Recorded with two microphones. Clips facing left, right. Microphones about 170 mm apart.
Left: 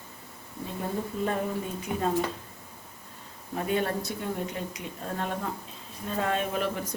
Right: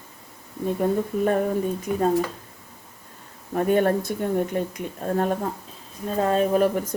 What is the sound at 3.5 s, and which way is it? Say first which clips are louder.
Speech: right 8 dB; 50° right (ahead or behind).